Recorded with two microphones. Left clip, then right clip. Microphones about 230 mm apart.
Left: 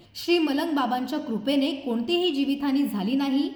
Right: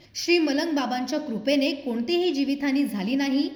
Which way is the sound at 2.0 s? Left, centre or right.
Centre.